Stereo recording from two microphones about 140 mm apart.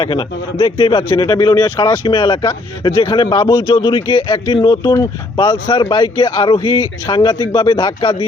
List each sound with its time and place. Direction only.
0.0 s speech: 30° left (ahead or behind)